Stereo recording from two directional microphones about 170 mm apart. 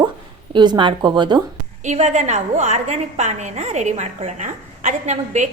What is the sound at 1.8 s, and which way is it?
A woman's voice, 45° right (ahead or behind).